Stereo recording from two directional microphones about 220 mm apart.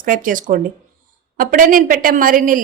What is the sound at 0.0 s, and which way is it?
A woman's voice, 40° right (ahead or behind).